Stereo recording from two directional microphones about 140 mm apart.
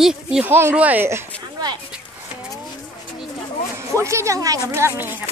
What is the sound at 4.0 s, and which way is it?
A woman's voice, 20° right (ahead or behind).